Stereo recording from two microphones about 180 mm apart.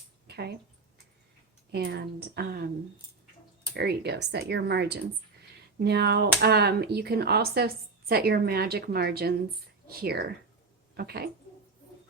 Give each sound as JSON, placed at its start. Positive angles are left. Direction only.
{"t": 0.3, "sound": "a sound", "side_deg": -65}
{"t": 1.7, "sound": "a woman's voice", "side_deg": -65}
{"t": 3.8, "sound": "a woman's voice", "side_deg": -65}